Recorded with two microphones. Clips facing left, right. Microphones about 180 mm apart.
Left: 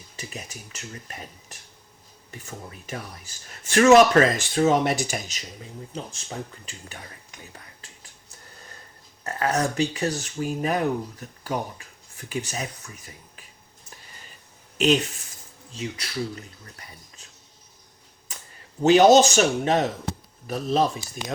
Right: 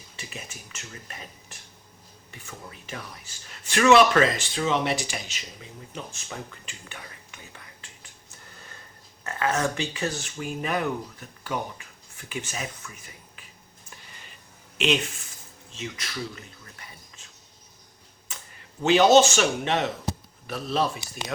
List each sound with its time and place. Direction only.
0.2 s speech: 35° left (ahead or behind)
2.3 s speech: 40° left (ahead or behind)
5.9 s speech: 35° left (ahead or behind)
9.2 s speech: 35° left (ahead or behind)
14.8 s speech: 40° left (ahead or behind)
18.8 s speech: 40° left (ahead or behind)